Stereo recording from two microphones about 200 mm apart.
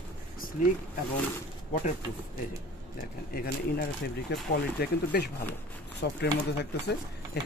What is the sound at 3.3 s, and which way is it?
Speech, 50° left (ahead or behind).